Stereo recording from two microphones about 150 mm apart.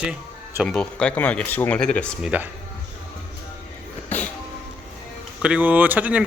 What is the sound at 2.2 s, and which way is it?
Speech, 10° right (ahead or behind).